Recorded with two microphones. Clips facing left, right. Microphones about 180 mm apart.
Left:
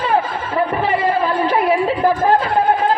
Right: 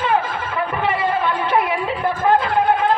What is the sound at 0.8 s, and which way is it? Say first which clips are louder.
Chatter: left 3 dB; 35° left (ahead or behind).